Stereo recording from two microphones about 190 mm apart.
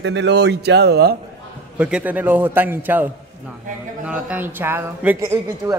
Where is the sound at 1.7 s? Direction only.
5° right (ahead or behind).